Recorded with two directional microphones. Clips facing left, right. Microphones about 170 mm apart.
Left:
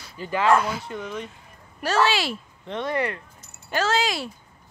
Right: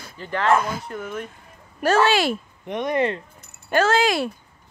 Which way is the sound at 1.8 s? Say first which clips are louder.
Right 4 dB; 50° right (ahead or behind).